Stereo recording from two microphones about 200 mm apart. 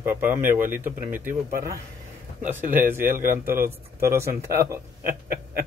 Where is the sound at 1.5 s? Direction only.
50° right (ahead or behind).